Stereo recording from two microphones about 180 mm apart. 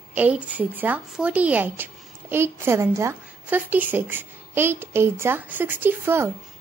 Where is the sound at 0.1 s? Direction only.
10° right (ahead or behind).